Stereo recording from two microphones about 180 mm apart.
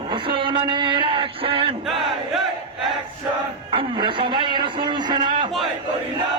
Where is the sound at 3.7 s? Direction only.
25° right (ahead or behind).